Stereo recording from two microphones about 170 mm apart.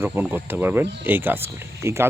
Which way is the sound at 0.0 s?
10° right (ahead or behind).